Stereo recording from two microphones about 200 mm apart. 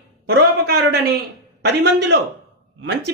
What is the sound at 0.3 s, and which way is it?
Speech, 55° right (ahead or behind).